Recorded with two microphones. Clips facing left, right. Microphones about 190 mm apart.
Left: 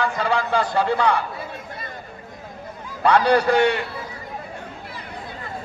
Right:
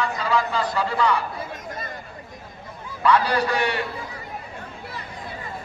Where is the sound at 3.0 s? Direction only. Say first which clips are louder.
Left 3 dB; 65° left (ahead or behind).